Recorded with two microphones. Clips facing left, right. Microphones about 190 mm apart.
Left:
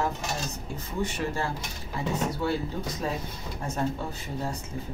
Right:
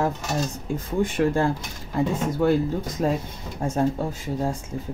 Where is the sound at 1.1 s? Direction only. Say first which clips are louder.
Right 9 dB; 55° right (ahead or behind).